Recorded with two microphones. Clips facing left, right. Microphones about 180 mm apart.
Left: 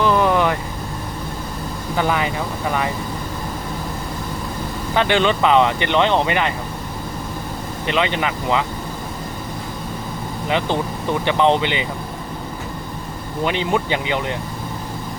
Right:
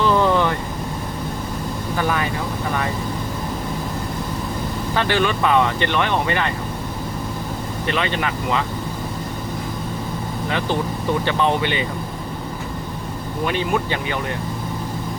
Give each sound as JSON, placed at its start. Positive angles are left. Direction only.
{"t": 0.0, "sound": "vehicle", "side_deg": 15}
{"t": 2.0, "sound": "speech", "side_deg": 15}
{"t": 4.9, "sound": "speech", "side_deg": 20}
{"t": 7.9, "sound": "speech", "side_deg": 15}
{"t": 11.3, "sound": "speech", "side_deg": 20}
{"t": 13.4, "sound": "speech", "side_deg": 20}